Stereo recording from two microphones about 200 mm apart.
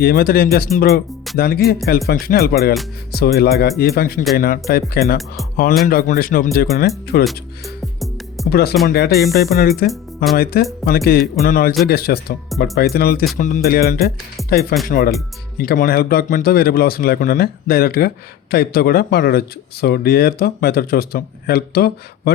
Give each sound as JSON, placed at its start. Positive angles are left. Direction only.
{"t": 0.0, "sound": "speech", "side_deg": 50}
{"t": 7.9, "sound": "music", "side_deg": 0}
{"t": 8.4, "sound": "speech", "side_deg": 50}